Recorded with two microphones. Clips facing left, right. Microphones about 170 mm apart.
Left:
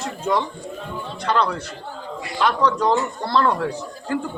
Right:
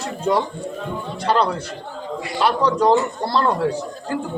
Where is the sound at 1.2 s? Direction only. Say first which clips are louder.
Right 2 dB; 35° right (ahead or behind).